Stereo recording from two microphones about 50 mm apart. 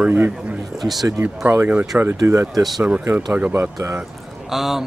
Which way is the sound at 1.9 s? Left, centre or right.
Right.